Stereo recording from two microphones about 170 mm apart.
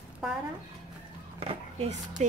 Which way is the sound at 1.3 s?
35° right (ahead or behind).